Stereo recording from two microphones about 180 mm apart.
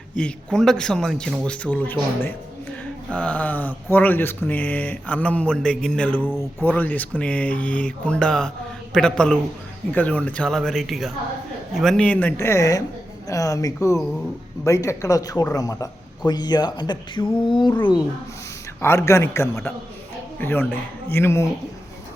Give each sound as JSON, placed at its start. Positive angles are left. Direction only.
{"t": 0.2, "sound": "a man's voice", "side_deg": 5}
{"t": 18.8, "sound": "speech", "side_deg": 15}